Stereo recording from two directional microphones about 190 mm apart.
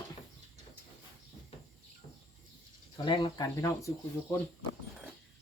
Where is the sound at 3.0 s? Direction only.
20° left (ahead or behind).